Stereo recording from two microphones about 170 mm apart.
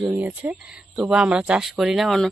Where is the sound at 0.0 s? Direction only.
10° right (ahead or behind).